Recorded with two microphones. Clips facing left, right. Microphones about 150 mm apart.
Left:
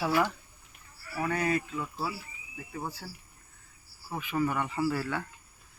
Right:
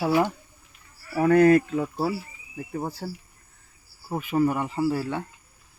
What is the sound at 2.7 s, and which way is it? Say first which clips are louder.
Speech: right 7 dB; 40° right (ahead or behind).